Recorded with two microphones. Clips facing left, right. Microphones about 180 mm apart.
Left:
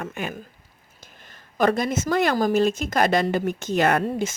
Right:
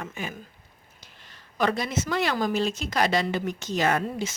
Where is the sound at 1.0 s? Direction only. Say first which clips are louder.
Left 5 dB; 50° left (ahead or behind).